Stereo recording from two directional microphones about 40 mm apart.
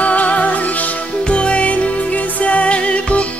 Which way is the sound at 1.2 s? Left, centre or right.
Left.